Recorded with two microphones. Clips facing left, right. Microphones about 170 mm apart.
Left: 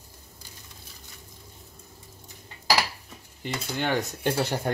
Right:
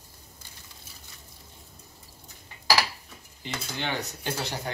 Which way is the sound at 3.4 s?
50° left (ahead or behind).